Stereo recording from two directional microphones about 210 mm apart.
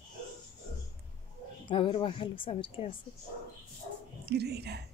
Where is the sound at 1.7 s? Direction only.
25° left (ahead or behind).